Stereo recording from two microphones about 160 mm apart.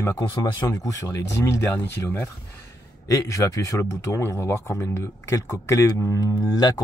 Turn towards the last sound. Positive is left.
turn(degrees=25)  # may be behind; listen again after turning